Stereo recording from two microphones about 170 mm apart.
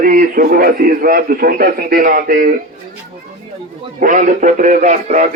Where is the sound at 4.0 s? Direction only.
50° right (ahead or behind).